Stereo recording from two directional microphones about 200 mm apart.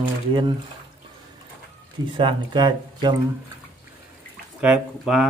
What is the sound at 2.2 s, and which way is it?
Speech, 25° right (ahead or behind).